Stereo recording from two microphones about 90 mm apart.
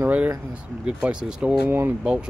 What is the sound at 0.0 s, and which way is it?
Speech, 20° right (ahead or behind).